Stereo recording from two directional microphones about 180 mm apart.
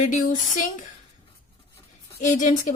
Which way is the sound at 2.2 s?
45° left (ahead or behind).